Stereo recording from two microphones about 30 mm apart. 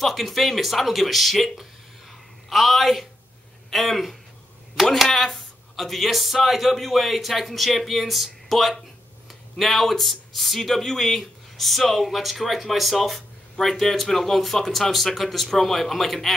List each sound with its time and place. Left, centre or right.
0.0 s speech: centre